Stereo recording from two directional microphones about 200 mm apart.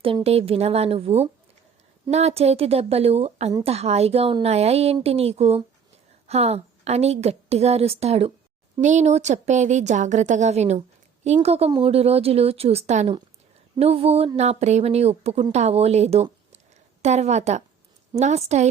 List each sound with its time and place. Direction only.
0.0 s a woman's voice: 30° right (ahead or behind)